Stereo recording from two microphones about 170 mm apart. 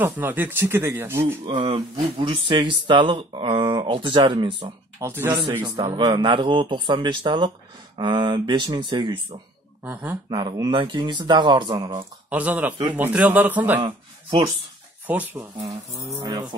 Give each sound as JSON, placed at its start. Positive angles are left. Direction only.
{"t": 0.0, "sound": "speech", "side_deg": -10}
{"t": 1.4, "sound": "speech", "side_deg": -30}
{"t": 5.0, "sound": "speech", "side_deg": -10}
{"t": 5.6, "sound": "speech", "side_deg": -30}
{"t": 12.3, "sound": "speech", "side_deg": -10}
{"t": 13.7, "sound": "speech", "side_deg": -25}
{"t": 15.0, "sound": "speech", "side_deg": -10}